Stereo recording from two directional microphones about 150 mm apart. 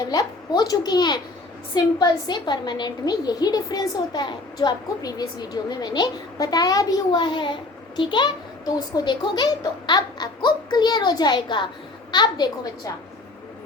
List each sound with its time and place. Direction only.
0.1 s a child's voice: 25° left (ahead or behind)